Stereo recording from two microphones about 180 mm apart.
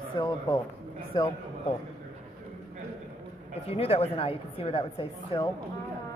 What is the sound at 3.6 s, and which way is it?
A woman's voice, 35° left (ahead or behind).